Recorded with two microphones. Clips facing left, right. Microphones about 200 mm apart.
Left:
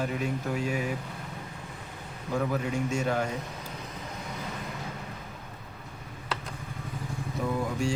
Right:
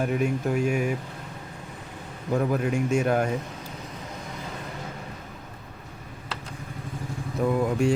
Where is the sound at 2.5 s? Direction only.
55° right (ahead or behind).